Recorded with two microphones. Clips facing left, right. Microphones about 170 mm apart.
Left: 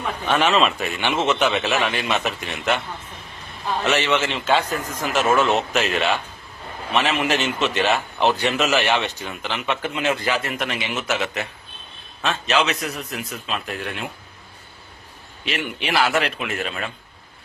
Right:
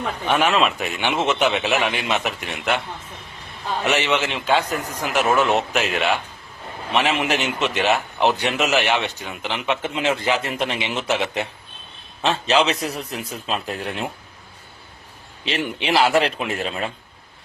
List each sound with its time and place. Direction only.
0.3 s a man's voice: 10° right (ahead or behind)
3.8 s a man's voice: 15° right (ahead or behind); by 14.1 s 35° right (ahead or behind)
15.4 s a man's voice: 30° right (ahead or behind)